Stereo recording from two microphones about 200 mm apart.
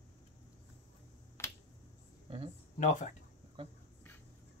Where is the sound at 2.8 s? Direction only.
40° left (ahead or behind).